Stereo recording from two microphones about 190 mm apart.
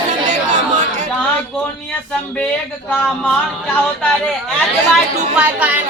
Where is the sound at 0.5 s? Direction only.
40° right (ahead or behind).